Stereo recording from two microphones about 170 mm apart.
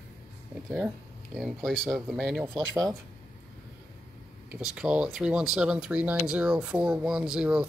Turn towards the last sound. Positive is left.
turn(degrees=-5)  # may be behind; listen again after turning